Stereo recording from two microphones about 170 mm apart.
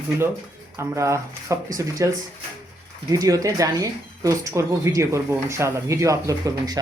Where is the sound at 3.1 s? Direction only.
20° right (ahead or behind).